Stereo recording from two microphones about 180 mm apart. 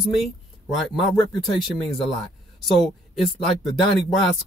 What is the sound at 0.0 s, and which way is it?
A man's voice, centre (ahead or behind).